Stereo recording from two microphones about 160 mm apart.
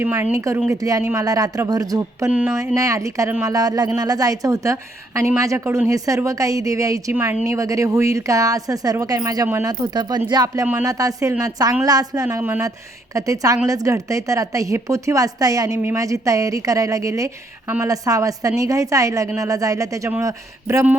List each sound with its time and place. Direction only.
0.0 s a woman's voice: 15° right (ahead or behind)
2.3 s speech: 10° right (ahead or behind)
2.7 s a woman's voice: 20° right (ahead or behind)